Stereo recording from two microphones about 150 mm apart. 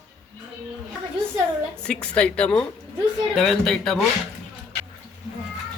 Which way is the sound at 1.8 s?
5° left (ahead or behind).